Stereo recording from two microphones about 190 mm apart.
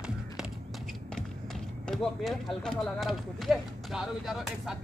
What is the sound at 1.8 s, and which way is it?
Speech, centre (ahead or behind).